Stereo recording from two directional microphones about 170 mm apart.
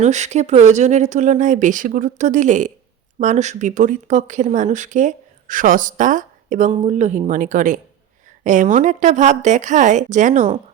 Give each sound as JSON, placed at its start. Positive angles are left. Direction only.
{"t": 0.0, "sound": "speech", "side_deg": -40}